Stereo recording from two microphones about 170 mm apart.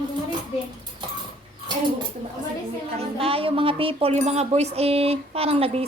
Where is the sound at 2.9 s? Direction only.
35° right (ahead or behind).